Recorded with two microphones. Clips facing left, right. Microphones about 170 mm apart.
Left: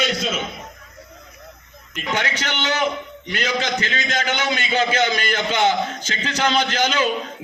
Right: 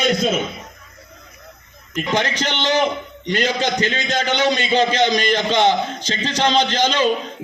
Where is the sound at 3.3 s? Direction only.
35° right (ahead or behind).